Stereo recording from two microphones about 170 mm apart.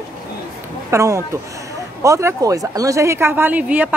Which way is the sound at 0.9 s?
15° right (ahead or behind).